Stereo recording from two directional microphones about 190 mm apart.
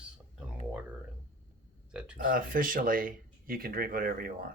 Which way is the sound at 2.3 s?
50° right (ahead or behind).